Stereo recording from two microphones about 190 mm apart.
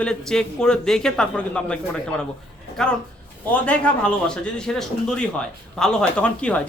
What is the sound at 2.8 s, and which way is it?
Speech, 5° left (ahead or behind).